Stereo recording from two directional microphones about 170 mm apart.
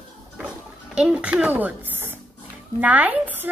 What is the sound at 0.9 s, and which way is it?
A child's voice, 5° right (ahead or behind).